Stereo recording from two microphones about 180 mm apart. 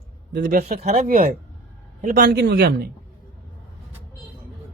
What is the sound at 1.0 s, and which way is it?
A man's voice, 50° right (ahead or behind).